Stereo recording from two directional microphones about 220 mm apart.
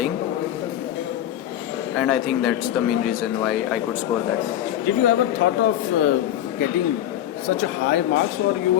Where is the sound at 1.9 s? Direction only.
5° left (ahead or behind).